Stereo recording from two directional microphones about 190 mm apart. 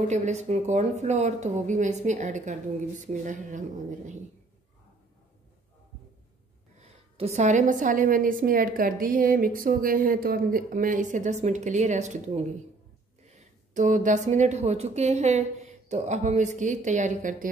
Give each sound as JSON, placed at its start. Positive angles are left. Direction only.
{"t": 0.1, "sound": "speech", "side_deg": -35}
{"t": 6.8, "sound": "a woman's voice", "side_deg": -35}